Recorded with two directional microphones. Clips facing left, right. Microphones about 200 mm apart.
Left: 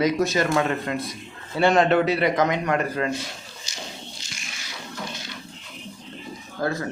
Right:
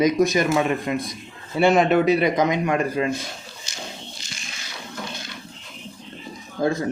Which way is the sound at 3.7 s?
50° right (ahead or behind).